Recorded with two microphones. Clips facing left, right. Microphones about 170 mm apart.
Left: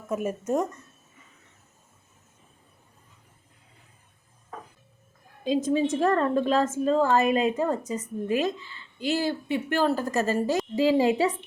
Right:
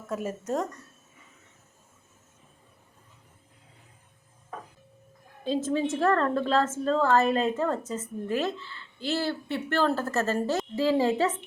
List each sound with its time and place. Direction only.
0.1 s speech: 15° left (ahead or behind)
5.4 s a woman's voice: 15° left (ahead or behind)